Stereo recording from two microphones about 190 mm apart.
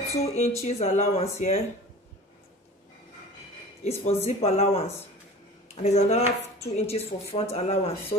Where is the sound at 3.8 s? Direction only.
35° left (ahead or behind).